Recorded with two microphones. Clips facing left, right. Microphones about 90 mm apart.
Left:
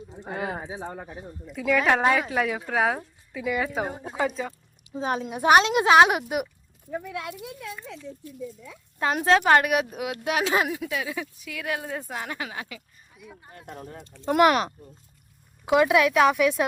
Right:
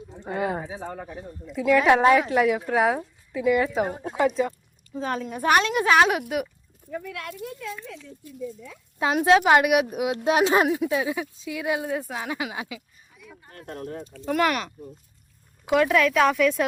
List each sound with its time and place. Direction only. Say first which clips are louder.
0.2 s speech: right 4 dB; centre (ahead or behind)
0.6 s speech: right 1 dB; 20° left (ahead or behind)
1.5 s speech: right 4 dB; centre (ahead or behind)
4.9 s speech: left 1 dB; 15° left (ahead or behind)
6.9 s speech: left 1 dB; 20° left (ahead or behind)
9.0 s a woman's voice: right 2 dB; 10° right (ahead or behind)
11.9 s speech: right 4 dB; 5° right (ahead or behind)
13.4 s speech: right 5 dB; 10° left (ahead or behind)
14.3 s speech: left 4 dB; 20° left (ahead or behind)
15.7 s speech: left 1 dB; 10° left (ahead or behind)